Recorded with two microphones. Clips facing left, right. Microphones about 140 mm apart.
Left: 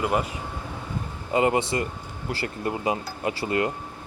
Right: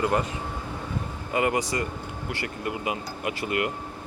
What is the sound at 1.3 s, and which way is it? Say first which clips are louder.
A man's voice: left 3 dB; 25° left (ahead or behind).